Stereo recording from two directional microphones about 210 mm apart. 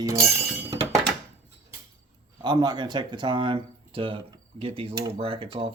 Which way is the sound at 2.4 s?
20° right (ahead or behind).